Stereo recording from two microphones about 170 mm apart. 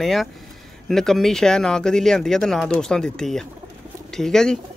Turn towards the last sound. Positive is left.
turn(degrees=5)  # may be behind; listen again after turning